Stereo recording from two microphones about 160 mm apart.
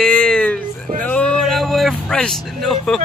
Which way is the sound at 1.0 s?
5° left (ahead or behind).